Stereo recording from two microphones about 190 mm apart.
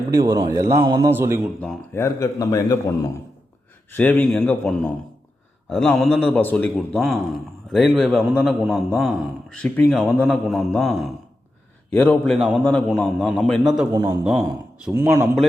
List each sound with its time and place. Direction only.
0.1 s a man's voice: 20° right (ahead or behind)
1.9 s a man's voice: 15° left (ahead or behind)
3.9 s a man's voice: 10° left (ahead or behind)
13.9 s a man's voice: 10° right (ahead or behind)